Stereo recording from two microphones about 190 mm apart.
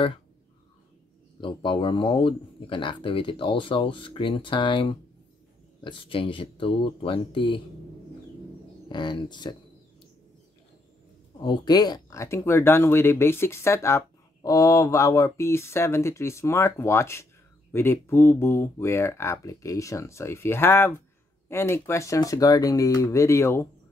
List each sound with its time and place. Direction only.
1.4 s speech: 25° left (ahead or behind)
8.8 s speech: 25° left (ahead or behind)
11.4 s speech: 20° left (ahead or behind)